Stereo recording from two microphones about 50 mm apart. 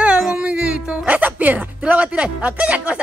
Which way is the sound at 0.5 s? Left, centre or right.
Right.